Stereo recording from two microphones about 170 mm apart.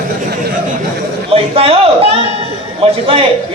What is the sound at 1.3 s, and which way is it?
Speech, 35° right (ahead or behind).